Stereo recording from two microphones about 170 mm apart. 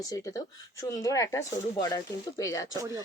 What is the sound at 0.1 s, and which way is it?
Speech, 20° left (ahead or behind).